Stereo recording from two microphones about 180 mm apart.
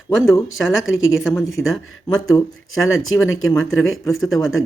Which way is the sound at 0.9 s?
90° left.